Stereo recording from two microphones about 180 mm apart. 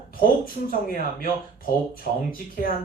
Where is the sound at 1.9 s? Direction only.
50° left (ahead or behind).